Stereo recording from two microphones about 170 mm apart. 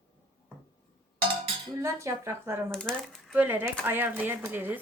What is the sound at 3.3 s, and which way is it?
Speech, 10° right (ahead or behind).